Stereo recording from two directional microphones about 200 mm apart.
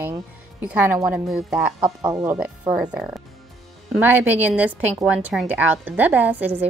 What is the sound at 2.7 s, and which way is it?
A woman's voice, 5° right (ahead or behind).